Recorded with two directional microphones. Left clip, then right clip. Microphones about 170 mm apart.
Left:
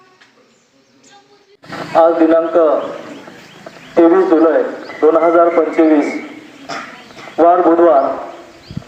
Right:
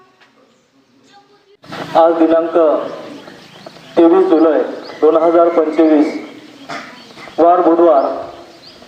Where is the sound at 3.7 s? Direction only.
10° left (ahead or behind).